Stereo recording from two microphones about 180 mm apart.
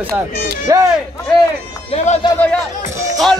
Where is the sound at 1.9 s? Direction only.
40° left (ahead or behind).